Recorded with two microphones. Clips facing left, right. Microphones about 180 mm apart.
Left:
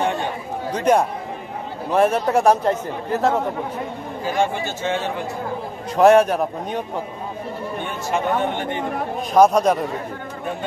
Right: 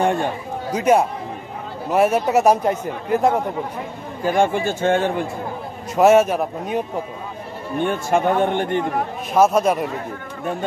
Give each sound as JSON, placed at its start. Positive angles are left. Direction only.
{"t": 0.0, "sound": "a sound", "side_deg": -50}
{"t": 0.7, "sound": "speech", "side_deg": -5}
{"t": 4.4, "sound": "speech", "side_deg": -55}
{"t": 5.9, "sound": "a man's voice", "side_deg": -5}
{"t": 7.8, "sound": "speech", "side_deg": -50}
{"t": 9.3, "sound": "a man's voice", "side_deg": -5}